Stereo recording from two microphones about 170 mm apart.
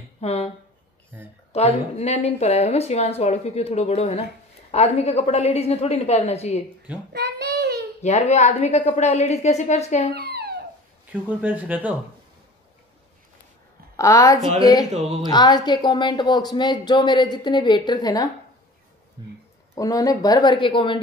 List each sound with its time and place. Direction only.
0.2 s speech: 40° left (ahead or behind)
1.1 s speech: 10° right (ahead or behind)
1.5 s a woman's voice: 40° left (ahead or behind)
7.1 s child singing: 80° right
8.0 s a woman's voice: 40° left (ahead or behind)
10.1 s a sound: 70° right (ahead or behind)
11.2 s speech: 10° right (ahead or behind)
13.9 s a woman's voice: 20° left (ahead or behind)
14.9 s speech: 40° right (ahead or behind)
15.2 s speech: 25° left (ahead or behind)
19.2 s speech: 30° right (ahead or behind)
19.7 s speech: 20° left (ahead or behind)